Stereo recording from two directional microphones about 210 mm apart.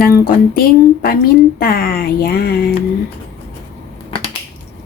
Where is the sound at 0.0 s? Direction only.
45° left (ahead or behind).